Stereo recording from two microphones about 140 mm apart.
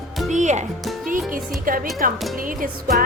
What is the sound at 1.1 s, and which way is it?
Music, 80° right.